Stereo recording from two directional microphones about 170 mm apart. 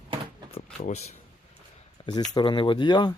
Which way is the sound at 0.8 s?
40° left (ahead or behind).